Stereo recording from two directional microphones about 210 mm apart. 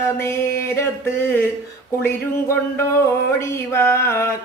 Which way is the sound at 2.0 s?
10° left (ahead or behind).